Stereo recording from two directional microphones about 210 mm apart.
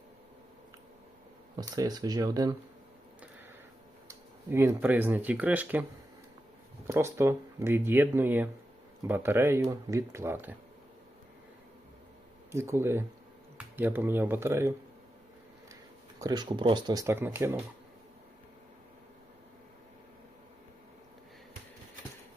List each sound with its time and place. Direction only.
1.5 s speech: 20° right (ahead or behind)
4.1 s speech: 10° right (ahead or behind)
6.8 s speech: 10° right (ahead or behind)
12.5 s speech: 15° right (ahead or behind)
16.2 s speech: 20° right (ahead or behind)